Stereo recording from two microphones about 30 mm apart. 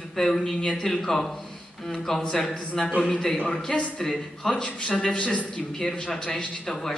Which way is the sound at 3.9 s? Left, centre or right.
Centre.